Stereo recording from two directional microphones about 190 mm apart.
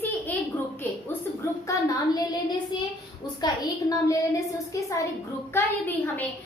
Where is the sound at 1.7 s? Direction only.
20° left (ahead or behind).